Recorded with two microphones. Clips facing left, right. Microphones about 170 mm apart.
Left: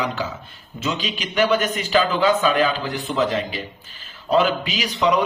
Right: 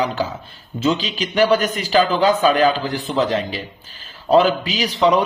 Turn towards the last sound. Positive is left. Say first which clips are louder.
# right 3 dB
turn(degrees=-35)  # may be behind; listen again after turning